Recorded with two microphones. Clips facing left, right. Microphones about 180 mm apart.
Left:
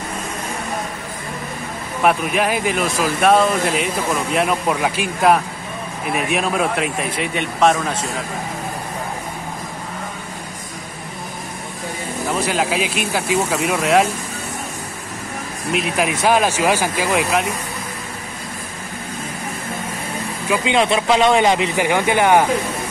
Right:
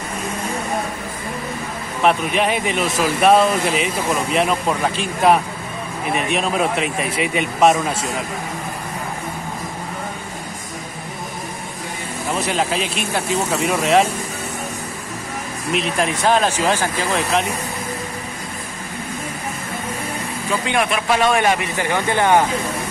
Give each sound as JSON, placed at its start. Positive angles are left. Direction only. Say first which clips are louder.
{"t": 2.0, "sound": "speech", "louder": "even", "side_deg": 0}
{"t": 12.4, "sound": "speech", "louder": "even", "side_deg": 5}
{"t": 15.7, "sound": "speech", "louder": "left 1 dB", "side_deg": 5}
{"t": 20.6, "sound": "speech", "louder": "left 4 dB", "side_deg": 25}